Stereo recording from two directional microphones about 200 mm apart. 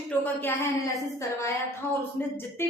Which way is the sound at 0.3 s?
10° left (ahead or behind).